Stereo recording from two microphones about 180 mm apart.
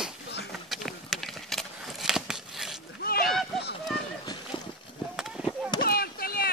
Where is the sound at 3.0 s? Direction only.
55° left (ahead or behind).